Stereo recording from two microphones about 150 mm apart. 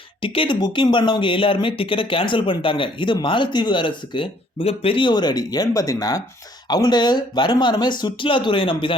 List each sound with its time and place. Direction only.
0.2 s speech: 35° left (ahead or behind)